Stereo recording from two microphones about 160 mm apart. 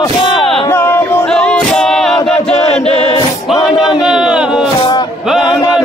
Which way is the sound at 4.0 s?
5° right (ahead or behind).